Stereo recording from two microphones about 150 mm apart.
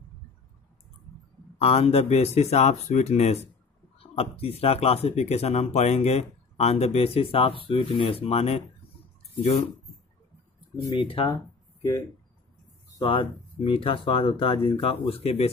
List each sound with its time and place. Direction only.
1.6 s speech: 40° left (ahead or behind)
11.0 s speech: 40° left (ahead or behind)
11.2 s a sound: 20° left (ahead or behind)
13.0 s speech: 35° left (ahead or behind)